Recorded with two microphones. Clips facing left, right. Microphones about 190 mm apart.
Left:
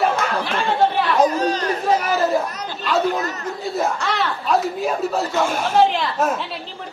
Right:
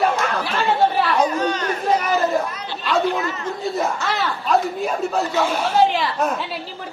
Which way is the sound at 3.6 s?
Centre (ahead or behind).